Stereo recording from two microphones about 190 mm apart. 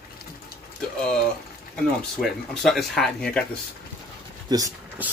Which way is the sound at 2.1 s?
Centre (ahead or behind).